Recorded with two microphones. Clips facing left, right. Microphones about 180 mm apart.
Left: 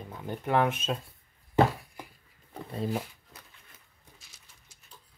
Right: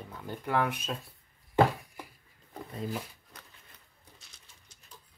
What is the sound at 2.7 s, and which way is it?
Speech, 30° left (ahead or behind).